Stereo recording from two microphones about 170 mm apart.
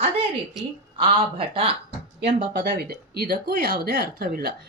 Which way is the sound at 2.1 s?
80° right.